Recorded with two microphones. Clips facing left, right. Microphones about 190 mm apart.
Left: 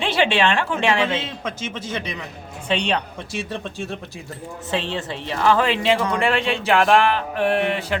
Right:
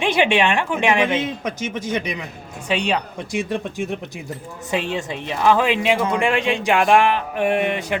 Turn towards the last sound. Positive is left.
turn(degrees=-15)  # may be behind; listen again after turning